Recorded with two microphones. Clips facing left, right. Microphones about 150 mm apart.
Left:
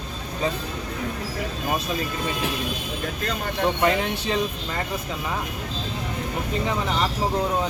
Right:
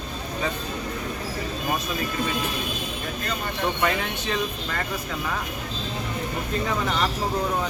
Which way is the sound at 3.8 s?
30° left (ahead or behind).